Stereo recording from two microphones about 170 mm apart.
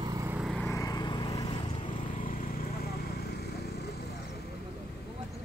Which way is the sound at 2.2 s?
55° left (ahead or behind).